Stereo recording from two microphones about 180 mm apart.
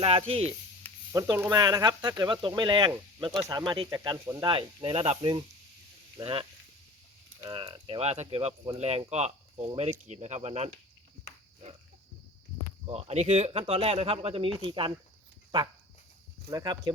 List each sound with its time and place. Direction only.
0.0 s speech: 30° right (ahead or behind)
1.1 s speech: 15° right (ahead or behind)
7.5 s speech: 25° right (ahead or behind)
12.8 s speech: 35° right (ahead or behind)
16.5 s speech: 20° right (ahead or behind)